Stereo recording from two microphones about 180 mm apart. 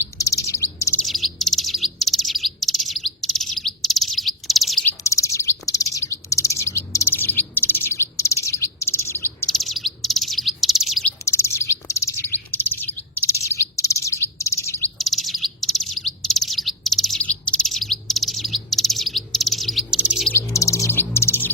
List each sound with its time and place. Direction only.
0.2 s bird: 15° left (ahead or behind)
1.0 s bird: centre (ahead or behind)
4.9 s bird: 15° left (ahead or behind)
9.5 s bird: centre (ahead or behind)
11.3 s bird: 15° left (ahead or behind)
14.9 s chirp: centre (ahead or behind)
20.3 s bird: 15° left (ahead or behind)